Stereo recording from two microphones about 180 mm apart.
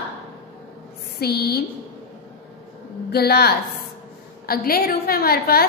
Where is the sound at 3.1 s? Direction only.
60° left (ahead or behind).